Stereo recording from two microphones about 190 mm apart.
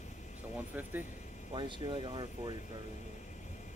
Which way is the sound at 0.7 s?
5° right (ahead or behind).